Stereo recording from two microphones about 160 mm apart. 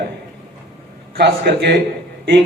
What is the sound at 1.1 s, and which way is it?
Speech, 90° right.